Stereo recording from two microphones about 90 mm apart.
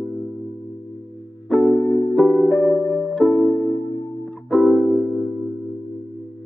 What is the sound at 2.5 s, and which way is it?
Music, 15° left (ahead or behind).